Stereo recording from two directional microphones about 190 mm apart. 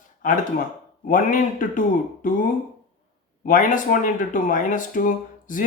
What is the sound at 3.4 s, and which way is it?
Speech, 45° left (ahead or behind).